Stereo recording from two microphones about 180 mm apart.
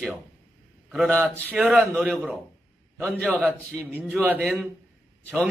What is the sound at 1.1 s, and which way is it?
Speech, 5° left (ahead or behind).